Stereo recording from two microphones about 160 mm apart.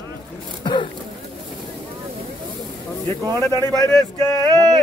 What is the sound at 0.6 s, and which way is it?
Speech, 30° left (ahead or behind).